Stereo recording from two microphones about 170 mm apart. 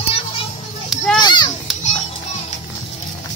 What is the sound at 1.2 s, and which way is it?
Children playing, 25° left (ahead or behind).